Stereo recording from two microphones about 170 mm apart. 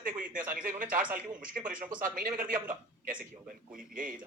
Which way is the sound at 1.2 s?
50° right (ahead or behind).